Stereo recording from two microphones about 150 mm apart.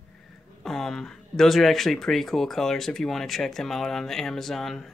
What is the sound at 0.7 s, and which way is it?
Speech, centre (ahead or behind).